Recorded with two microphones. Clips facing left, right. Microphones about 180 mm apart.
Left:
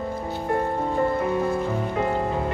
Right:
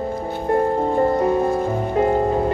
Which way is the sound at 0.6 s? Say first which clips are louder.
Right 6 dB; 35° right (ahead or behind).